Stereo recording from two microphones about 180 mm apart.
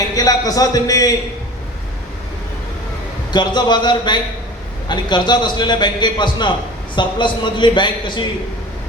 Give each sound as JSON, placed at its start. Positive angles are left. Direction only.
{"t": 0.2, "sound": "a man's voice", "side_deg": 20}
{"t": 3.3, "sound": "a man's voice", "side_deg": 25}